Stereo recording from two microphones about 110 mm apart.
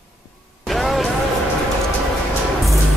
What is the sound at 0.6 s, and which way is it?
Music, centre (ahead or behind).